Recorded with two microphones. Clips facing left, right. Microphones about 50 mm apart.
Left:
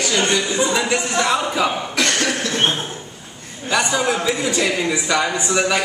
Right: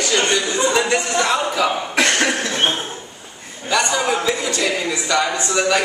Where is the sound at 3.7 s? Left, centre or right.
Centre.